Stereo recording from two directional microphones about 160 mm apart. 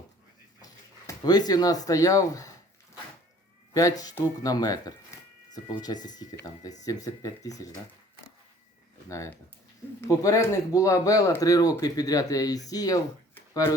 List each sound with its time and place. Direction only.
0.6 s speech: 25° left (ahead or behind)
3.8 s speech: 20° left (ahead or behind)
9.0 s speech: 20° left (ahead or behind)